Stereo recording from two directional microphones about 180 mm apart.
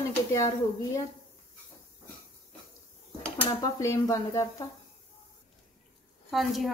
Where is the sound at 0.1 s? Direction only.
20° left (ahead or behind).